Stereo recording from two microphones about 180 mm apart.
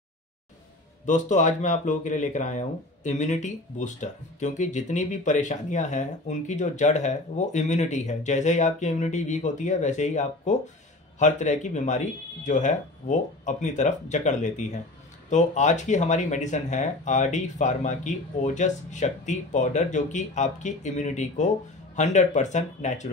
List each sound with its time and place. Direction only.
1.0 s speech: 40° left (ahead or behind)